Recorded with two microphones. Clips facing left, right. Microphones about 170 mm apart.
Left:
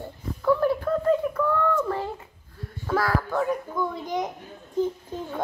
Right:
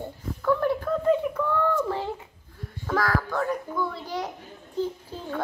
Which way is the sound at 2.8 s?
10° left (ahead or behind).